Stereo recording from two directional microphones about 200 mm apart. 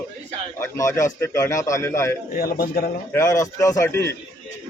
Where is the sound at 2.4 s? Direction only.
50° left (ahead or behind).